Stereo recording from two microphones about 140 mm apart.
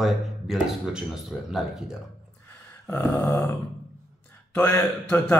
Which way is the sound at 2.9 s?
10° left (ahead or behind).